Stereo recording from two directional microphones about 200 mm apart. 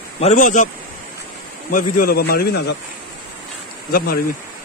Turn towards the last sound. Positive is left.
turn(degrees=50)  # may be behind; listen again after turning